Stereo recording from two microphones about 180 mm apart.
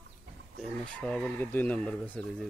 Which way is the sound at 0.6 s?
5° left (ahead or behind).